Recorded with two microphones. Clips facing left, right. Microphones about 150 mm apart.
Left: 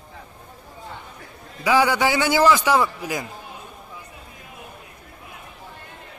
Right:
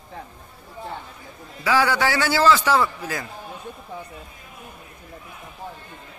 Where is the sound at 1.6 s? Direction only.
15° left (ahead or behind).